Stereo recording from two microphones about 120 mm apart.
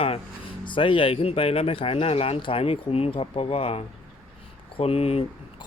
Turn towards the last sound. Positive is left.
turn(degrees=60)  # may be behind; listen again after turning